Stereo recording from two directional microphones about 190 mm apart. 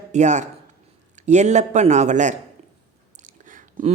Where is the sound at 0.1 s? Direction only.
40° right (ahead or behind).